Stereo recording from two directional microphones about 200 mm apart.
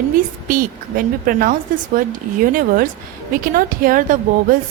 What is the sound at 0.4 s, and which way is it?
A woman's voice, 45° right (ahead or behind).